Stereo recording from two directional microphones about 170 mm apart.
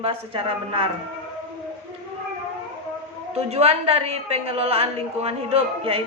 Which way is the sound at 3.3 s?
35° right (ahead or behind).